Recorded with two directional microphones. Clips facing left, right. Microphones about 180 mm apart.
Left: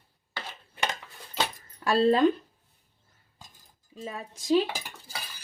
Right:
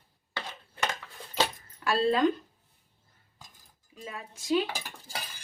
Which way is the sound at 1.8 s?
30° left (ahead or behind).